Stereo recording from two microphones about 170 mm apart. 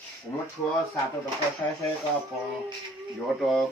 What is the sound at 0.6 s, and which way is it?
Speech, 5° left (ahead or behind).